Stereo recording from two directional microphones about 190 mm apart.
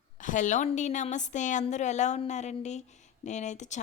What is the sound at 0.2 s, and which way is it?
Speech, 40° left (ahead or behind).